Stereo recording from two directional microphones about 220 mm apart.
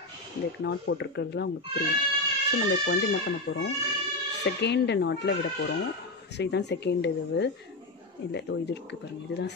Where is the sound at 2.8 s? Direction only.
50° left (ahead or behind).